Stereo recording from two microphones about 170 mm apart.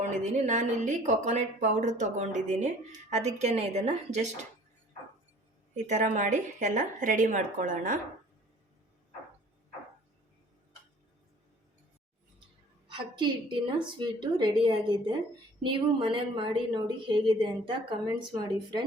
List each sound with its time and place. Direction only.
0.1 s speech: 45° right (ahead or behind)
5.7 s speech: 45° right (ahead or behind)
12.9 s a woman's voice: 30° right (ahead or behind)